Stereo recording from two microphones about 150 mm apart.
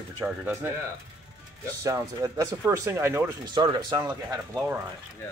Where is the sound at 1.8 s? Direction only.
20° right (ahead or behind).